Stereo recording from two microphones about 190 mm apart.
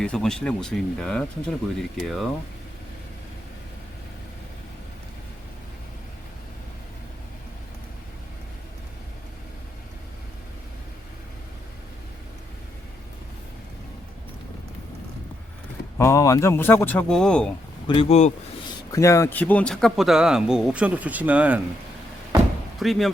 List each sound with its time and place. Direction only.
0.0 s speech: 5° left (ahead or behind)
16.0 s speech: 15° left (ahead or behind)
17.8 s speech: 25° left (ahead or behind)
18.7 s speech: 15° left (ahead or behind); by 21.6 s 10° right (ahead or behind)
22.8 s speech: centre (ahead or behind)